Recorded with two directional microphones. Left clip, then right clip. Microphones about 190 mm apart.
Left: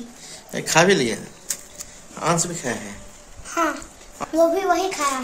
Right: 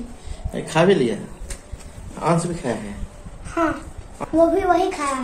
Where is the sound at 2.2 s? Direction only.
20° left (ahead or behind).